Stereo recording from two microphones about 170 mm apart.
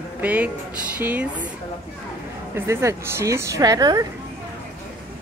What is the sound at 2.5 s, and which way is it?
Speech, 15° right (ahead or behind).